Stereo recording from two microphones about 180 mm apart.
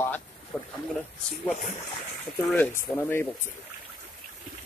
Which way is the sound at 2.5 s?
10° left (ahead or behind).